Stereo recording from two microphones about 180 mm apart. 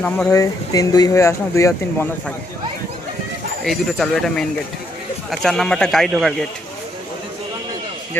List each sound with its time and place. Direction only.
0.3 s speech: 20° left (ahead or behind)
3.6 s speech: centre (ahead or behind)
8.1 s speech: 10° left (ahead or behind)